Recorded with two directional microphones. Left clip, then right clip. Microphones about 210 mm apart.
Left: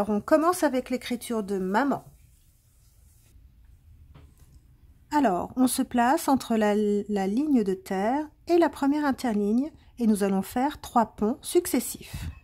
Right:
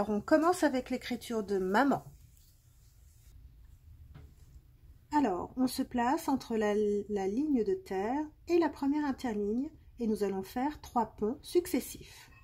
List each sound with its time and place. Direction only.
0.0 s speech: 15° left (ahead or behind)
5.1 s speech: 30° left (ahead or behind)